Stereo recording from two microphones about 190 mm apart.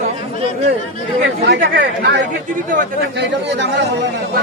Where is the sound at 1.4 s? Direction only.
65° right (ahead or behind).